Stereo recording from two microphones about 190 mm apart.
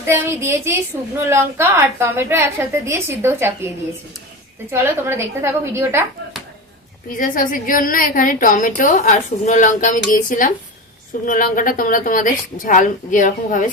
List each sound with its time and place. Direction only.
0.0 s a woman's voice: 15° right (ahead or behind)
4.7 s a woman's voice: 15° right (ahead or behind)
7.2 s a woman's voice: 45° left (ahead or behind)